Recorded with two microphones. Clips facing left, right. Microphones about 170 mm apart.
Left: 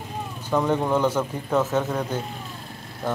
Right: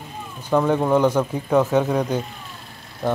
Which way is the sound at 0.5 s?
10° right (ahead or behind).